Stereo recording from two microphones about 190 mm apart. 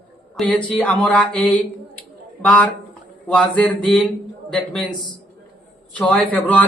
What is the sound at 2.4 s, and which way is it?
Speech, 5° left (ahead or behind).